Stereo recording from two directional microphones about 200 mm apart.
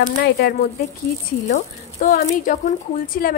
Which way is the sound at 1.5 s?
40° left (ahead or behind).